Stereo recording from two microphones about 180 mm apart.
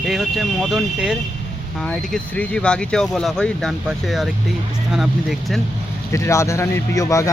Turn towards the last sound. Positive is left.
turn(degrees=20)  # may be behind; listen again after turning